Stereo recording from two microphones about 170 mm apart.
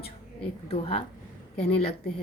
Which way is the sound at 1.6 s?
35° left (ahead or behind).